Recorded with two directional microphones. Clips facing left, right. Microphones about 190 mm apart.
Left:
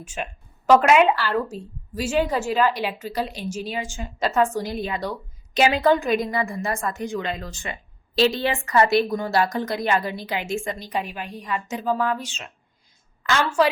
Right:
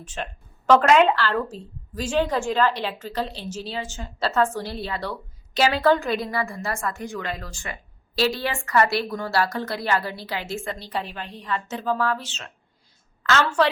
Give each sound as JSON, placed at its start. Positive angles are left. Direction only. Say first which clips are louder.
{"t": 0.0, "sound": "a woman's voice", "louder": "left 1 dB", "side_deg": 10}